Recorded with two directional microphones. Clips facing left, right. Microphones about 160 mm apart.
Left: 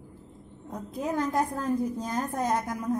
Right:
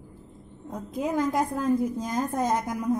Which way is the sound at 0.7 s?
15° right (ahead or behind).